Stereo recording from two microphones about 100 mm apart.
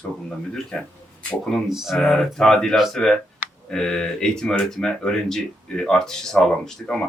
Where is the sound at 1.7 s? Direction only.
5° right (ahead or behind).